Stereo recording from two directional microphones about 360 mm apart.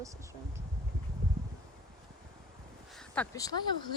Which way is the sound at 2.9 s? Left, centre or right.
Centre.